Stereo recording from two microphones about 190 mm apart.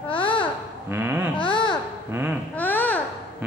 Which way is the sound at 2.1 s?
10° right (ahead or behind).